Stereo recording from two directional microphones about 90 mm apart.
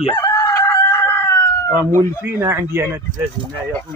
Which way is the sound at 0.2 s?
35° left (ahead or behind).